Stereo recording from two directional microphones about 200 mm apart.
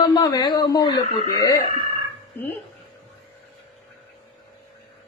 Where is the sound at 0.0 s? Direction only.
20° left (ahead or behind).